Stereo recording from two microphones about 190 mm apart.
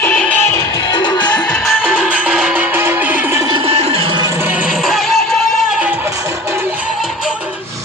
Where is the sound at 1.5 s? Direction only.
Centre (ahead or behind).